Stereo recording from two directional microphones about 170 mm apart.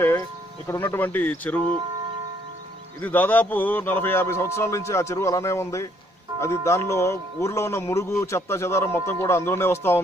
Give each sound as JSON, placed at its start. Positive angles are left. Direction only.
{"t": 0.7, "sound": "speech", "side_deg": 15}
{"t": 3.0, "sound": "speech", "side_deg": 10}